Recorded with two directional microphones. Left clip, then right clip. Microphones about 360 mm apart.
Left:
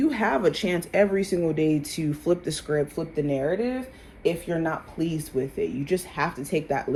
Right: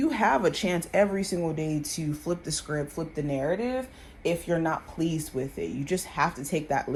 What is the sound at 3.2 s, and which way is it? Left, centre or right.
Speech, right.